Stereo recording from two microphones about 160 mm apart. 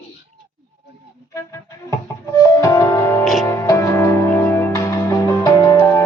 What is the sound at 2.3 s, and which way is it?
Music, 20° left (ahead or behind).